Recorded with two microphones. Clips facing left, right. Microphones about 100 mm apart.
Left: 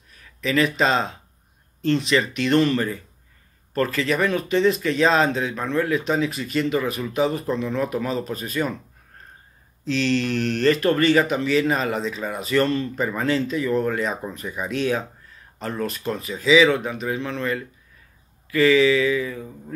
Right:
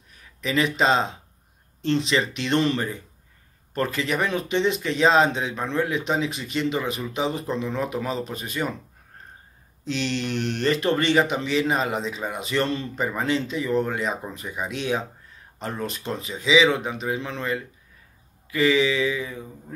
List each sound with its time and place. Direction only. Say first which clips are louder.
0.4 s speech: left 2 dB; 25° right (ahead or behind)
9.8 s speech: left 5 dB; 25° right (ahead or behind)